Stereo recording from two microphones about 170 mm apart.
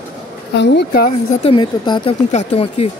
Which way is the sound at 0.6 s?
90° left.